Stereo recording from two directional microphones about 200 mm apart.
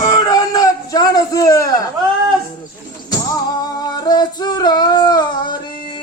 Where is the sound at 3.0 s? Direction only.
20° left (ahead or behind).